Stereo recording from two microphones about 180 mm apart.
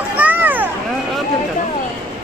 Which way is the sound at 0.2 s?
10° right (ahead or behind).